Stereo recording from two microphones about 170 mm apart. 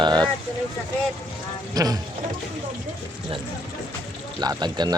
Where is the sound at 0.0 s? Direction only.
25° right (ahead or behind).